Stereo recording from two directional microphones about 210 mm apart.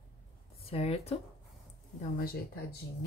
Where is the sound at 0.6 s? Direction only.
30° left (ahead or behind).